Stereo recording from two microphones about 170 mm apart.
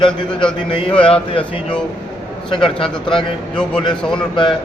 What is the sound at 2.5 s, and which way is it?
Speech, 30° left (ahead or behind).